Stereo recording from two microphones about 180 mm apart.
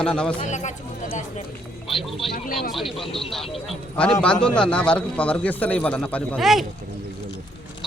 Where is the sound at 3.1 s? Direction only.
30° left (ahead or behind).